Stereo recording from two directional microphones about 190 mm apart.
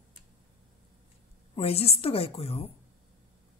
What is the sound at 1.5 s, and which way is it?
Speech, 30° left (ahead or behind).